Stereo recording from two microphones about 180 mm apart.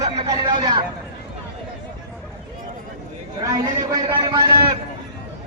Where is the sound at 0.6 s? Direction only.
25° right (ahead or behind).